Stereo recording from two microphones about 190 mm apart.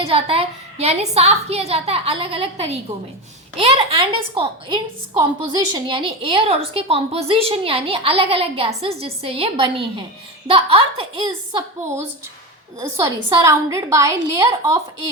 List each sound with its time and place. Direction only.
0.0 s a woman's voice: 30° right (ahead or behind)
13.0 s a woman's voice: 15° right (ahead or behind)